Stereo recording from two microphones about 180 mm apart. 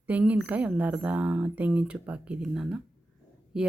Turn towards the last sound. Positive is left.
turn(degrees=-5)  # may be behind; listen again after turning